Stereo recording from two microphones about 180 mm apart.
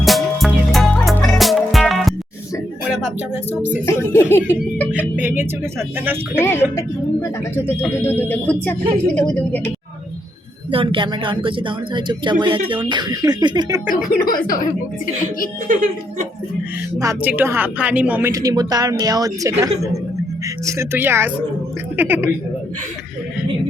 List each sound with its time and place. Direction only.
0.0 s music: centre (ahead or behind)
3.8 s speech: 15° left (ahead or behind)
4.9 s music: 10° right (ahead or behind)
6.4 s speech: 15° left (ahead or behind)
10.7 s a woman's voice: 30° right (ahead or behind)
13.9 s speech: 50° left (ahead or behind)
17.2 s a woman's voice: 10° right (ahead or behind)